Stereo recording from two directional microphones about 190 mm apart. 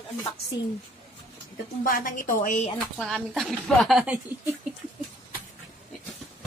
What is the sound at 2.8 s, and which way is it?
Speech, 5° left (ahead or behind).